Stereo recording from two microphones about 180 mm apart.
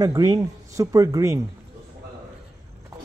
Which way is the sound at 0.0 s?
20° right (ahead or behind).